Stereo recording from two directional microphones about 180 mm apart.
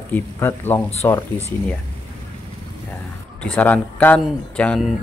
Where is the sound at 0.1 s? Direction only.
10° left (ahead or behind).